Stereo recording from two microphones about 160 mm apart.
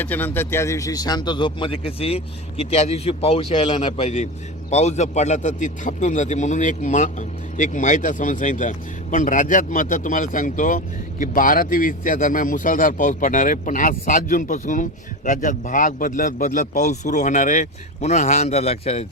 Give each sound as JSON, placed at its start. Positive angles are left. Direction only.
{"t": 0.0, "sound": "speech", "side_deg": 10}